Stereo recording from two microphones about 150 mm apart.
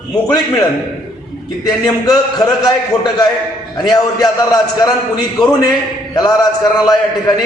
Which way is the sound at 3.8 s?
25° left (ahead or behind).